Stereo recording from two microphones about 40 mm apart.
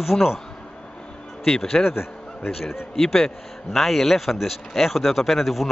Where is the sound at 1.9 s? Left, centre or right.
Left.